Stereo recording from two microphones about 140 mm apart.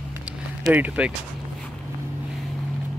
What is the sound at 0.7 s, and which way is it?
Speech, 10° right (ahead or behind).